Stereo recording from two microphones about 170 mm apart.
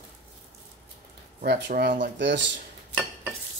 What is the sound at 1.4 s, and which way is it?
Speech, 65° right (ahead or behind).